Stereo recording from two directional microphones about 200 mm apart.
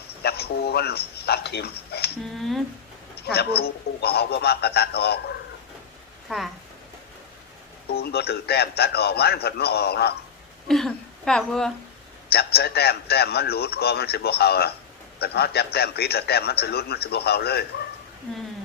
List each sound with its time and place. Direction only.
0.2 s a man's voice: 55° left (ahead or behind)
3.2 s a man's voice: 50° left (ahead or behind)
6.2 s speech: centre (ahead or behind)
7.9 s a man's voice: 50° left (ahead or behind)
10.7 s speech: centre (ahead or behind)
12.3 s a man's voice: 50° left (ahead or behind)
18.3 s speech: 5° left (ahead or behind)